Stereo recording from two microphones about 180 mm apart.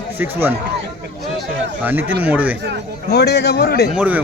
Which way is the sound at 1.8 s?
10° right (ahead or behind).